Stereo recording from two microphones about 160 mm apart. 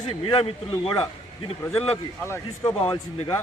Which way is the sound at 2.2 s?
20° left (ahead or behind).